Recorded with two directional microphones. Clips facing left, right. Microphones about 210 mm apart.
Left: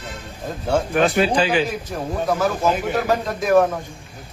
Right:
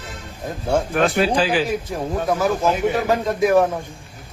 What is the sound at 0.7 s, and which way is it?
Speech, centre (ahead or behind).